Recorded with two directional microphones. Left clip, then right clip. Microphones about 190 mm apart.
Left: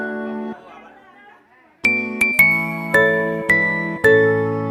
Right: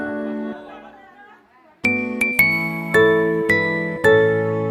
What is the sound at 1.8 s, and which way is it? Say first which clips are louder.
Music: left 2 dB; centre (ahead or behind).